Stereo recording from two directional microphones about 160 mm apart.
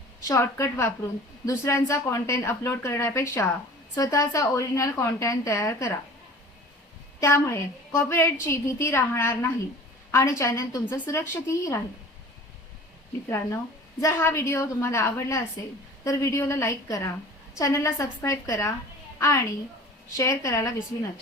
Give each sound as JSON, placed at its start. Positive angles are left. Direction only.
{"t": 0.3, "sound": "a woman's voice", "side_deg": 15}
{"t": 7.2, "sound": "a woman's voice", "side_deg": 15}
{"t": 14.0, "sound": "a woman's voice", "side_deg": 15}